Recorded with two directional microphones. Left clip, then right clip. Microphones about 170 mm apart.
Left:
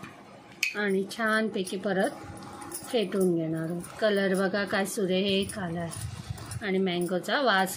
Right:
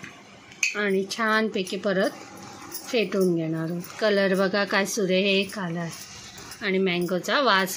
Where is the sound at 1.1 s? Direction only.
30° right (ahead or behind).